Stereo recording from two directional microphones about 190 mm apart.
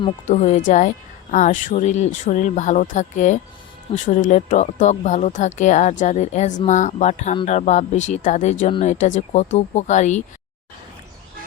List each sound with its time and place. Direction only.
0.3 s speech: 40° left (ahead or behind)